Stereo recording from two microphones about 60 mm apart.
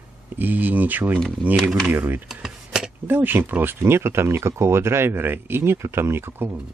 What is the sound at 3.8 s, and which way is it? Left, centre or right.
Speech, right.